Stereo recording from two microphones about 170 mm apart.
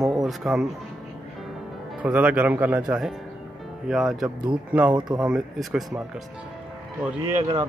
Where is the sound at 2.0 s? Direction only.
10° right (ahead or behind).